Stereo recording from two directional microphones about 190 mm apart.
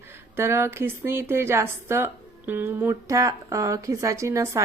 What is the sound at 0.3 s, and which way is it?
Speech, 15° right (ahead or behind).